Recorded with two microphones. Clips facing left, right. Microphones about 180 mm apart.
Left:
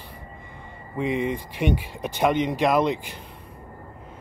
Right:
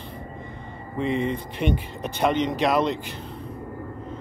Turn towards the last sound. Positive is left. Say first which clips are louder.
# left 1 dB
turn(degrees=10)  # may be behind; listen again after turning